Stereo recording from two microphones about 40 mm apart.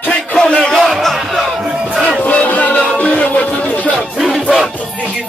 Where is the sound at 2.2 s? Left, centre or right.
Left.